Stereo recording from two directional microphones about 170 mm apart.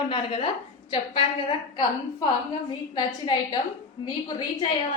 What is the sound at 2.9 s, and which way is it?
A woman's voice, 25° left (ahead or behind).